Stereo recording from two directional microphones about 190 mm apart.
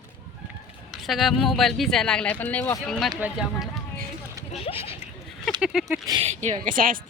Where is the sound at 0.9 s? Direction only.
Centre (ahead or behind).